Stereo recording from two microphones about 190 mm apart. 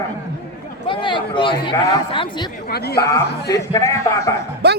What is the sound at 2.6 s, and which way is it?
Speech, 55° left (ahead or behind).